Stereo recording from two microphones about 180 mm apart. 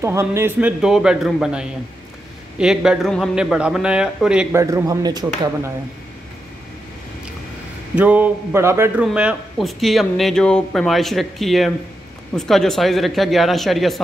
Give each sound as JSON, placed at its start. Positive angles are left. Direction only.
{"t": 0.0, "sound": "speech", "side_deg": -15}
{"t": 4.6, "sound": "speech", "side_deg": -15}
{"t": 7.9, "sound": "speech", "side_deg": -10}